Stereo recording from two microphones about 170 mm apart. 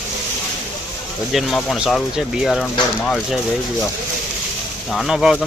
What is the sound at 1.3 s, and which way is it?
Speech, centre (ahead or behind).